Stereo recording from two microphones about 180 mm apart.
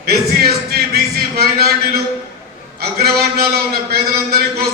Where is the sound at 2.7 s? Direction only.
60° right (ahead or behind).